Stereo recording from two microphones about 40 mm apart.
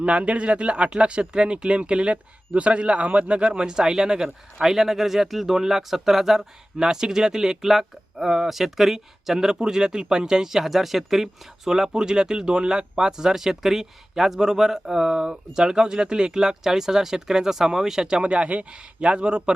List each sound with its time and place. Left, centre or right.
0.0 s speech: right; by 18.2 s centre
18.2 s speech: right